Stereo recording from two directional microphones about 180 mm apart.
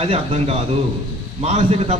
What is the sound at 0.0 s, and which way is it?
A man's voice, 35° right (ahead or behind).